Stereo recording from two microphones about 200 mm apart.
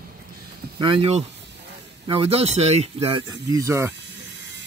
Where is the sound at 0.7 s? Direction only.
25° right (ahead or behind).